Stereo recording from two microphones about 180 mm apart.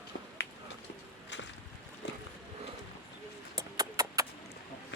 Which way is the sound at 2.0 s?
75° left (ahead or behind).